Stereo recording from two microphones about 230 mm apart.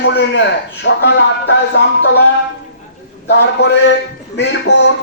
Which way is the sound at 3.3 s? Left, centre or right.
Left.